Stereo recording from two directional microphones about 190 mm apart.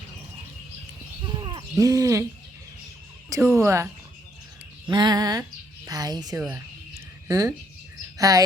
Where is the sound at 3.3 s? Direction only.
15° right (ahead or behind).